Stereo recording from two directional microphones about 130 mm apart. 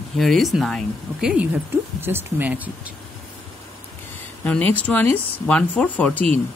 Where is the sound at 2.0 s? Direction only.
15° right (ahead or behind).